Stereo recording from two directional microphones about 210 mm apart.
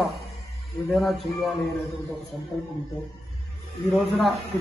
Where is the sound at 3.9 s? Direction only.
Centre (ahead or behind).